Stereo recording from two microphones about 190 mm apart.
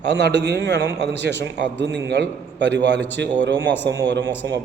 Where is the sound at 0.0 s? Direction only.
65° right (ahead or behind).